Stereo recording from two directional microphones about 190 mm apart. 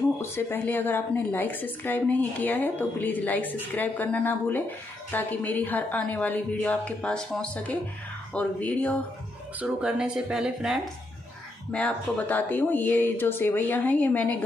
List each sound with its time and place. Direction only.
0.2 s speech: 10° left (ahead or behind)
9.6 s speech: 5° right (ahead or behind)
11.7 s speech: 10° left (ahead or behind)